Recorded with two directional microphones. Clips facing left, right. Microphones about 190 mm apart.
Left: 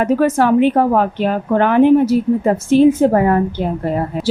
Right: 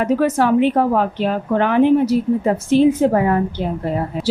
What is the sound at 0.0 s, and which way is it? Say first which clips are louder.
Speech: left 2 dB; 50° left (ahead or behind).